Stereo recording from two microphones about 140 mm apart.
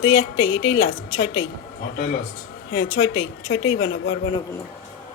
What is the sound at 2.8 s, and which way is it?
Speech, 30° left (ahead or behind).